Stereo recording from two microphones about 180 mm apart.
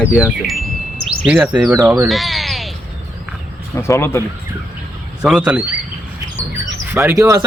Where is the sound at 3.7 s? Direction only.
15° left (ahead or behind).